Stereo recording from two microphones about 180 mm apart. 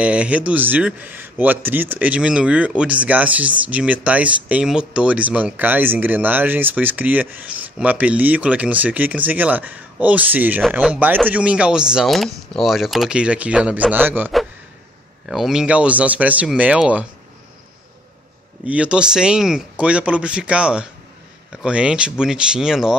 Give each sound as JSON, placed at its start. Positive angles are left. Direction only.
{"t": 0.0, "sound": "a man's voice", "side_deg": -5}
{"t": 18.7, "sound": "speech", "side_deg": -5}